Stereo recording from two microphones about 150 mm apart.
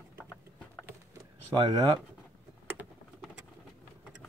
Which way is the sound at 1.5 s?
35° right (ahead or behind).